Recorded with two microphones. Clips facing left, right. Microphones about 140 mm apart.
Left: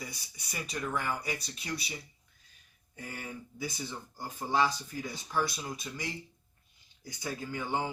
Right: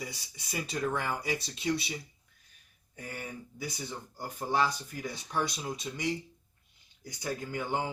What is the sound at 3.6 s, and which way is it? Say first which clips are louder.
Speech: left 1 dB; 15° right (ahead or behind).